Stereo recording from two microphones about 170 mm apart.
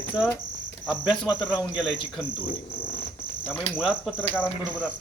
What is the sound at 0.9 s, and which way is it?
Speech, 5° right (ahead or behind).